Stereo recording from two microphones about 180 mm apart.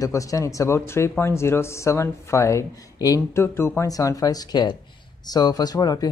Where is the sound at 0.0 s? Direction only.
20° left (ahead or behind).